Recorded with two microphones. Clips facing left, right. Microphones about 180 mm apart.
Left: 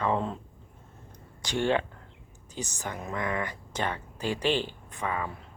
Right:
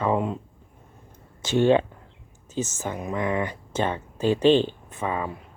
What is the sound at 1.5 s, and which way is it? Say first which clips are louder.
Speech: right 8 dB; 15° right (ahead or behind).